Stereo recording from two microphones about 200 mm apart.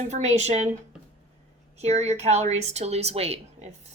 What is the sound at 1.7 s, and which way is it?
Speech, 35° right (ahead or behind).